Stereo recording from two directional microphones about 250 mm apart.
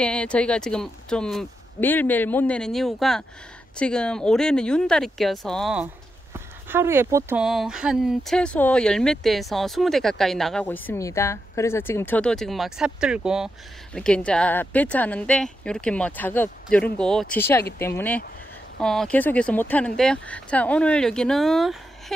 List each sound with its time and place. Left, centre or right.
0.0 s speech: centre